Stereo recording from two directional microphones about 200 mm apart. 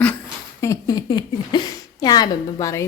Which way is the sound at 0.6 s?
15° left (ahead or behind).